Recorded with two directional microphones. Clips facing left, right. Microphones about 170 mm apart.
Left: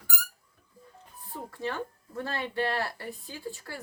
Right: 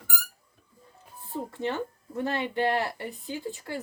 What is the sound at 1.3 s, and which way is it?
Speech, 25° right (ahead or behind).